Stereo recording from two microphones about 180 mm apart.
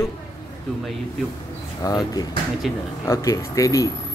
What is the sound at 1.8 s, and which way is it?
Speech, 20° left (ahead or behind).